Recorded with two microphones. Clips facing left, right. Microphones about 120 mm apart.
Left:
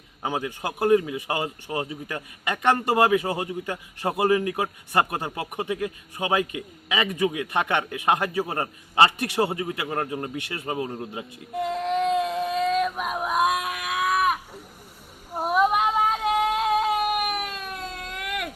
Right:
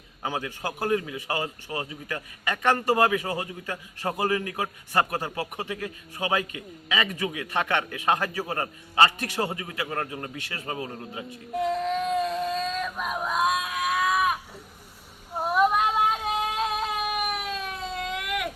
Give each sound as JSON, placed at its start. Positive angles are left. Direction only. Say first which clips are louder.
{"t": 0.2, "sound": "a man's voice", "louder": "left 3 dB", "side_deg": 15}
{"t": 11.2, "sound": "speech", "louder": "right 3 dB", "side_deg": 5}
{"t": 12.3, "sound": "yodeling", "louder": "left 4 dB", "side_deg": 15}
{"t": 13.7, "sound": "a sound", "louder": "even", "side_deg": 5}
{"t": 15.4, "sound": "female singing", "louder": "left 1 dB", "side_deg": 15}
{"t": 16.7, "sound": "baby cry", "louder": "left 6 dB", "side_deg": 5}